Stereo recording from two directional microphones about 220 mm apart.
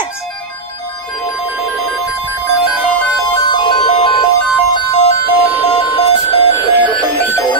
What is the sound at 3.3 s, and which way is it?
Music, 20° left (ahead or behind).